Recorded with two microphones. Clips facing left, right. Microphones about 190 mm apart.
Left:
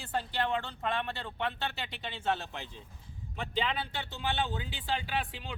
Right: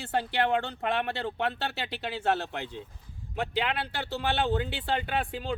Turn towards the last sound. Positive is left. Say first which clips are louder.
# right 4 dB
turn(degrees=-55)  # may be behind; listen again after turning